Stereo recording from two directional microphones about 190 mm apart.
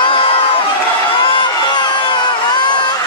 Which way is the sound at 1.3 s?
25° left (ahead or behind).